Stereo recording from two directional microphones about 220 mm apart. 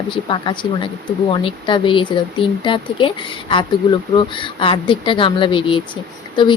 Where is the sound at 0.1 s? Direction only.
20° left (ahead or behind).